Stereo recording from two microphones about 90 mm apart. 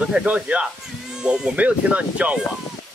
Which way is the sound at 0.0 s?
10° right (ahead or behind).